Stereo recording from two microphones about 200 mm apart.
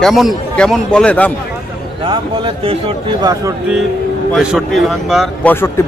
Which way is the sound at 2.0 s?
25° right (ahead or behind).